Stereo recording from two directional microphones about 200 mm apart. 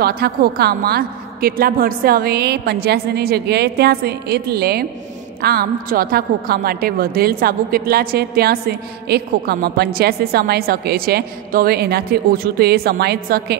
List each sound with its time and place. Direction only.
0.0 s a woman's voice: 50° right (ahead or behind)